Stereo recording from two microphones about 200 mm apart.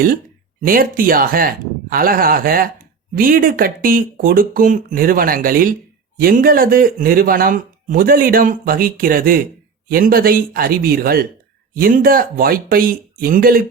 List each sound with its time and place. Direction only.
0.6 s speech: 45° right (ahead or behind)